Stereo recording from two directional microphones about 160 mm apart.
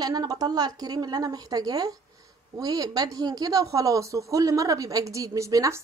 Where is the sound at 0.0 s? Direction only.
25° right (ahead or behind).